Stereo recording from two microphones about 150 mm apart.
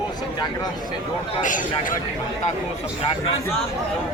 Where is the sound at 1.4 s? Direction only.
60° left (ahead or behind).